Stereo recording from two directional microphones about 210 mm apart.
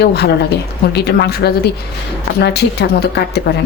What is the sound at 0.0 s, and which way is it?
Speech, 50° left (ahead or behind).